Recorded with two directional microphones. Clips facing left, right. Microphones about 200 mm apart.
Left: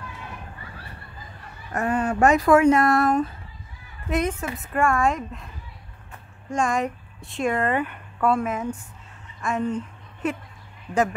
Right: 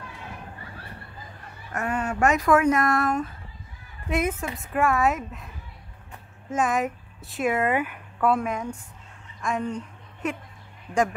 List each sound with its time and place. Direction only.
1.7 s speech: 35° left (ahead or behind)
4.1 s speech: 5° right (ahead or behind)
6.5 s speech: 5° right (ahead or behind)